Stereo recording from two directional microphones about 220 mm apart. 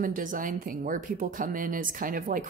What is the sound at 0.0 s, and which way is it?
Speech, 40° right (ahead or behind).